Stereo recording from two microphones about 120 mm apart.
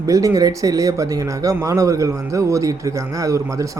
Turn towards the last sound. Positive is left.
turn(degrees=-25)  # may be behind; listen again after turning